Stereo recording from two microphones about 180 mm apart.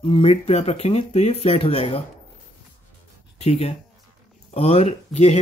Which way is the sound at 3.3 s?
35° left (ahead or behind).